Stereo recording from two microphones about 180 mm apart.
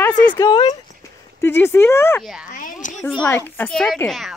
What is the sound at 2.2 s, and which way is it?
Speech, centre (ahead or behind).